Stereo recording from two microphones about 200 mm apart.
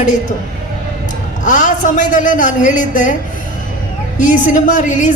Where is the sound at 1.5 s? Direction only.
40° left (ahead or behind).